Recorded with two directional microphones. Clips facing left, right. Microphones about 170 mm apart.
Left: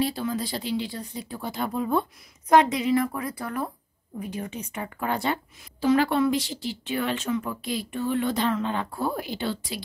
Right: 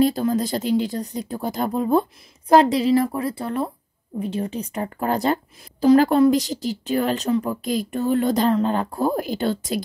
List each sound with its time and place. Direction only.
0.0 s a woman's voice: 45° right (ahead or behind)